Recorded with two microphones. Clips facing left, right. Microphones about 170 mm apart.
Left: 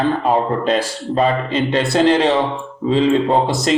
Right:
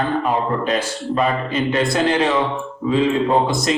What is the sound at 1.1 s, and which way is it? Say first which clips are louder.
A man's voice: left 3 dB; 30° left (ahead or behind).